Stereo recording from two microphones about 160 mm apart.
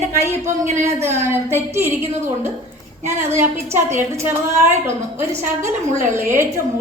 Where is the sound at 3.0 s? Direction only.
15° right (ahead or behind).